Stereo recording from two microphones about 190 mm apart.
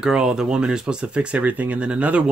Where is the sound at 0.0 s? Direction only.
5° right (ahead or behind).